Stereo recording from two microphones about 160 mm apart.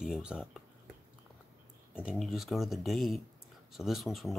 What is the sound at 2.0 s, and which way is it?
Speech, 5° right (ahead or behind).